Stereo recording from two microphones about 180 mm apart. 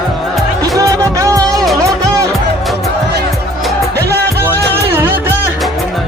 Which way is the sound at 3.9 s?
65° right (ahead or behind).